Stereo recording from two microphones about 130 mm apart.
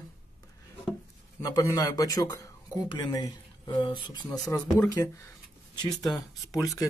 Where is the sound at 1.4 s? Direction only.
25° left (ahead or behind).